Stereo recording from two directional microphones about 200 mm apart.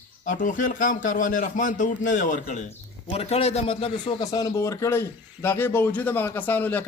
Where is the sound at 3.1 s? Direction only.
30° left (ahead or behind).